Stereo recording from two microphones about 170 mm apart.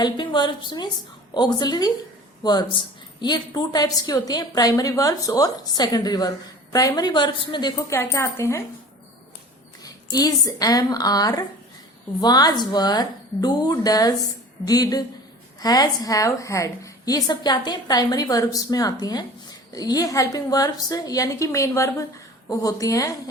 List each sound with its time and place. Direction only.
0.0 s a woman's voice: 25° left (ahead or behind)
9.8 s a woman's voice: 20° left (ahead or behind)